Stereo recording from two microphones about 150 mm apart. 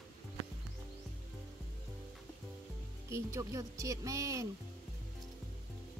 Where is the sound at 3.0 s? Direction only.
20° right (ahead or behind).